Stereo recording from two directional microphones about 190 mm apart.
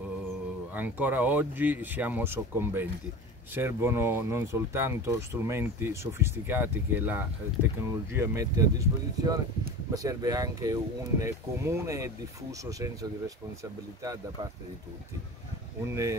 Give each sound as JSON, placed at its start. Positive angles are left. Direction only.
{"t": 0.7, "sound": "speech", "side_deg": -10}
{"t": 15.8, "sound": "speech", "side_deg": -15}